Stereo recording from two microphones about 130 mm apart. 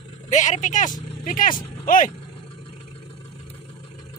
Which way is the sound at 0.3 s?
70° left (ahead or behind).